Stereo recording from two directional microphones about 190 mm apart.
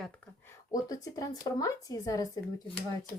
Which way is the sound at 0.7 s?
20° left (ahead or behind).